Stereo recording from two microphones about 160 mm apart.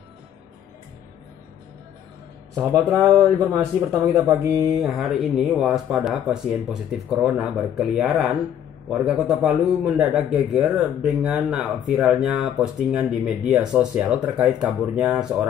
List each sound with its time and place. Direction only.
2.5 s speech: 20° right (ahead or behind)
4.3 s speech: 20° right (ahead or behind)
4.9 s a man's voice: centre (ahead or behind)